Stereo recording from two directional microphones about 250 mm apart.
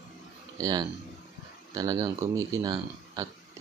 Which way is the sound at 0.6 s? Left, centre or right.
Centre.